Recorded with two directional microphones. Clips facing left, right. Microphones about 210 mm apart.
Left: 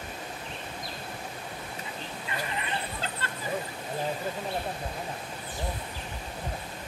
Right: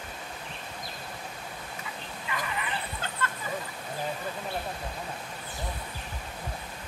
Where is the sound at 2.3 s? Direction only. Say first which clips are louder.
Right 1 dB; 25° left (ahead or behind).